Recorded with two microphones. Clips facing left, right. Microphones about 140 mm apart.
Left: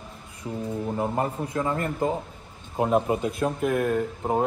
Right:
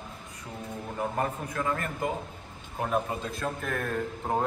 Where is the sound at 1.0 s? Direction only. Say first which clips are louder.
Left 1 dB; 25° left (ahead or behind).